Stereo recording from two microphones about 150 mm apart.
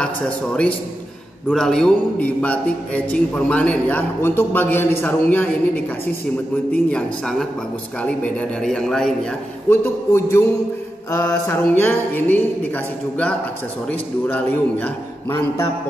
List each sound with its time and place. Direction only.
0.0 s a man's voice: 5° left (ahead or behind)
6.9 s a man's voice: 5° left (ahead or behind)
9.7 s a man's voice: 15° left (ahead or behind)